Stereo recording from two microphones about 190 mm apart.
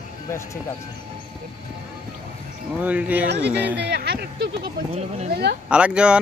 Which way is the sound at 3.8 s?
55° right (ahead or behind).